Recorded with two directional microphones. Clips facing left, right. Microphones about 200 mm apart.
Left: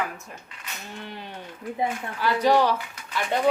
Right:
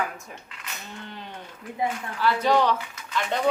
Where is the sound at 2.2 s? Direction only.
15° left (ahead or behind).